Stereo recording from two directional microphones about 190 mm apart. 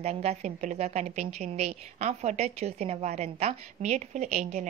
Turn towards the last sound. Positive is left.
turn(degrees=-35)  # may be behind; listen again after turning